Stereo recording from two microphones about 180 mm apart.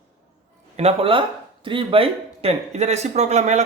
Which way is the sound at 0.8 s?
35° right (ahead or behind).